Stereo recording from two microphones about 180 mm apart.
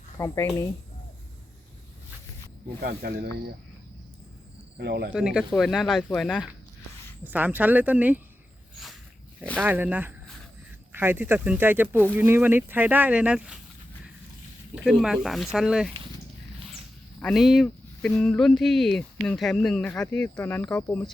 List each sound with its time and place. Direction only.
0.2 s speech: 15° left (ahead or behind)
2.8 s speech: 60° right (ahead or behind)
4.8 s speech: 65° right (ahead or behind)
5.1 s speech: 5° right (ahead or behind)
8.7 s a sound: centre (ahead or behind)
9.4 s speech: 5° left (ahead or behind)
9.6 s speech: 10° right (ahead or behind)
14.8 s speech: centre (ahead or behind)
17.2 s speech: centre (ahead or behind)